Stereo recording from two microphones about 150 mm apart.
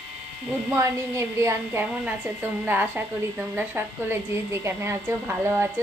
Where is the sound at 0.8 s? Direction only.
20° right (ahead or behind).